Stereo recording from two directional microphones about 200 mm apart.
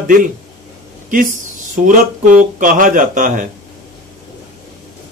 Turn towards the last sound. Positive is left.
turn(degrees=-40)  # may be behind; listen again after turning